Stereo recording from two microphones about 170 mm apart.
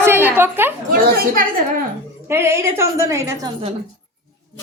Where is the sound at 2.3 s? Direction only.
15° right (ahead or behind).